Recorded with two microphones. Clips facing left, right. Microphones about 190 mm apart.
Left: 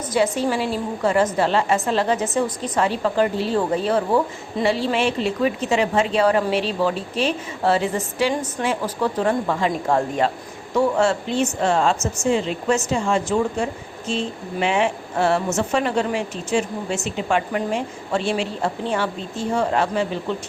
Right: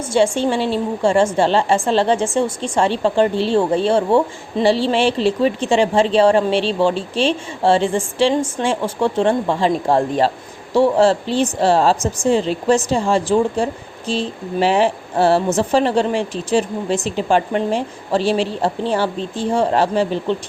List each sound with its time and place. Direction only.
0.1 s a woman's voice: 30° right (ahead or behind)